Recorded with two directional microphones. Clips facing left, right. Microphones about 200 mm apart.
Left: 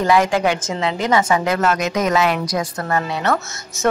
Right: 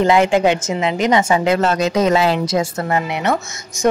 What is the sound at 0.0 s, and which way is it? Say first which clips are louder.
A woman's voice: right 3 dB; 25° right (ahead or behind).